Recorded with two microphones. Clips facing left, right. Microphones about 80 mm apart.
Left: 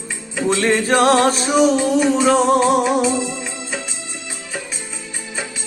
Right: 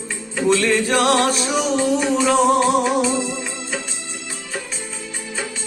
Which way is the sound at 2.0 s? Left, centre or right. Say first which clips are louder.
Left 3 dB; centre.